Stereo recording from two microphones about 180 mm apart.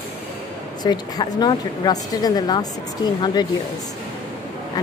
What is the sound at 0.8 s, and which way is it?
Speech, 25° left (ahead or behind).